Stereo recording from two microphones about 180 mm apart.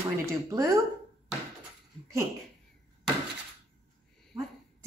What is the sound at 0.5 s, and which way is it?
Speech, 15° right (ahead or behind).